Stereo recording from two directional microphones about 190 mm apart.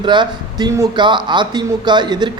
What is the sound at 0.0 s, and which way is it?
Speech, 25° right (ahead or behind).